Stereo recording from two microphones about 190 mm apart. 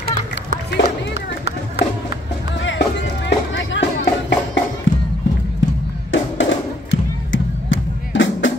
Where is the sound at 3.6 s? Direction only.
80° left.